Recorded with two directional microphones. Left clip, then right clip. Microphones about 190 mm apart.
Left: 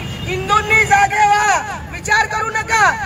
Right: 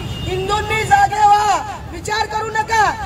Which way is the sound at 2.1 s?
15° left (ahead or behind).